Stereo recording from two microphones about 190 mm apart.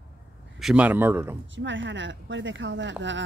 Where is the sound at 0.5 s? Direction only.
5° right (ahead or behind).